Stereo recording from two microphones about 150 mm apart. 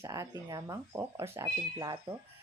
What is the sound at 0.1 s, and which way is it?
Speech, 25° right (ahead or behind).